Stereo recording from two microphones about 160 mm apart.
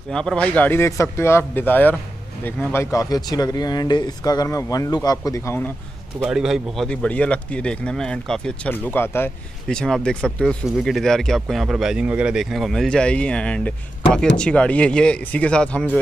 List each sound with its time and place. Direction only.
0.1 s speech: 5° left (ahead or behind)
6.1 s a man's voice: 5° right (ahead or behind)